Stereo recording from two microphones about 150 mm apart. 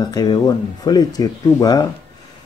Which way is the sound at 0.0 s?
25° left (ahead or behind).